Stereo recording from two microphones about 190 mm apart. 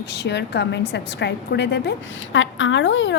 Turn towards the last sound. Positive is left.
turn(degrees=75)  # may be behind; listen again after turning